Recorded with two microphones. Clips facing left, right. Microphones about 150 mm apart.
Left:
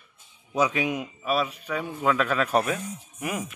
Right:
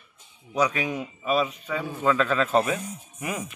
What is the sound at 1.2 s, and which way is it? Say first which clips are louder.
Speech: right 3 dB; 5° left (ahead or behind).